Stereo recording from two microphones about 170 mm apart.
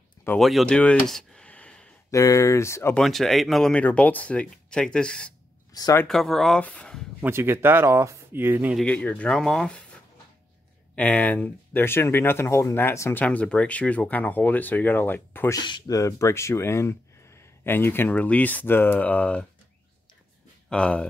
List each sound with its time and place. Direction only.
0.4 s speech: centre (ahead or behind)
2.0 s speech: 20° left (ahead or behind)
3.0 s speech: centre (ahead or behind)
5.7 s speech: 20° left (ahead or behind)
6.0 s speech: centre (ahead or behind)
7.2 s speech: 15° right (ahead or behind)
8.7 s speech: 10° left (ahead or behind)
11.0 s speech: 10° left (ahead or behind)
15.6 s speech: 25° left (ahead or behind); by 19.4 s 10° left (ahead or behind)
20.7 s speech: 5° left (ahead or behind)